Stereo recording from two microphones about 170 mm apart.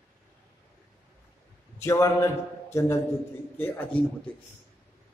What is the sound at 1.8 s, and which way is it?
Speech, 20° left (ahead or behind).